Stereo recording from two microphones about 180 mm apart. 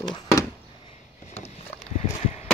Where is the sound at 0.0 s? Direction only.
20° left (ahead or behind).